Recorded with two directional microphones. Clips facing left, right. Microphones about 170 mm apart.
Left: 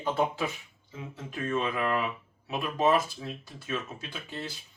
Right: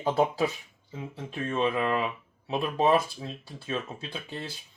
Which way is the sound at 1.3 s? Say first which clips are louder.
Right 3 dB; 25° right (ahead or behind).